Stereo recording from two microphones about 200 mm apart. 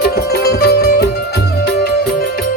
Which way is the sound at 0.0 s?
50° left (ahead or behind).